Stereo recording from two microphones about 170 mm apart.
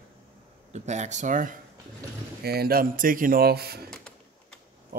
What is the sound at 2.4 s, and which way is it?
Speech, 65° right (ahead or behind).